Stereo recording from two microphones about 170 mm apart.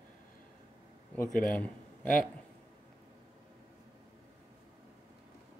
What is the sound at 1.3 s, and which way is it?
Speech, 55° left (ahead or behind).